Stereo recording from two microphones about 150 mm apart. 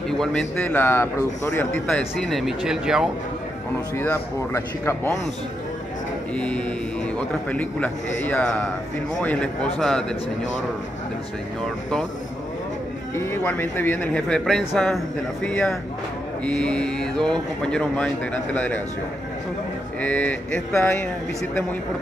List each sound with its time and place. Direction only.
0.2 s a man's voice: 5° left (ahead or behind)
1.9 s speech: 5° left (ahead or behind)
3.9 s a man's voice: 15° left (ahead or behind)
6.3 s a man's voice: 5° left (ahead or behind)
13.1 s a man's voice: 15° left (ahead or behind)
20.0 s a man's voice: 10° left (ahead or behind)